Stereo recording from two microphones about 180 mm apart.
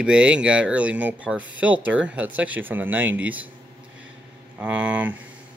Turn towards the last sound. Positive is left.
turn(degrees=-5)  # may be behind; listen again after turning